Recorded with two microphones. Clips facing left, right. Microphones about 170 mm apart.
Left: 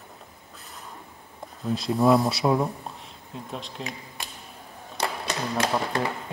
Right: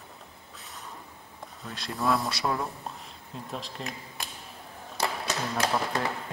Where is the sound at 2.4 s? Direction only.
30° left (ahead or behind).